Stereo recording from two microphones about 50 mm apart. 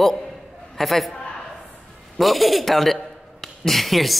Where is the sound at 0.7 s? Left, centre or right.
Centre.